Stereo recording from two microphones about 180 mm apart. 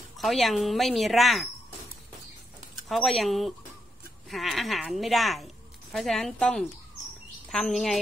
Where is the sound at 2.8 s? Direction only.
Centre (ahead or behind).